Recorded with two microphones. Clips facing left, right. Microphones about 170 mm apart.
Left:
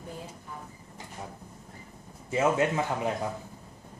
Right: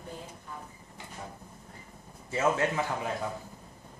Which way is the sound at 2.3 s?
20° left (ahead or behind).